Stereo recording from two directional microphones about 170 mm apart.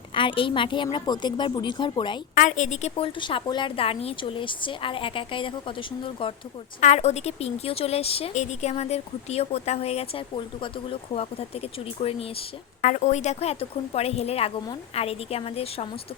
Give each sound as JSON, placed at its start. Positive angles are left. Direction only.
{"t": 0.1, "sound": "a woman's voice", "side_deg": 30}
{"t": 2.3, "sound": "a woman's voice", "side_deg": 50}
{"t": 3.2, "sound": "a woman's voice", "side_deg": 30}
{"t": 6.7, "sound": "a woman's voice", "side_deg": 45}
{"t": 12.8, "sound": "a woman's voice", "side_deg": 45}